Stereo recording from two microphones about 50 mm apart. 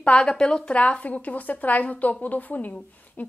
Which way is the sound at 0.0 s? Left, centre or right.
Left.